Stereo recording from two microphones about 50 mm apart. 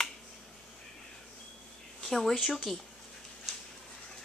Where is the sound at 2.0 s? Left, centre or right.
Centre.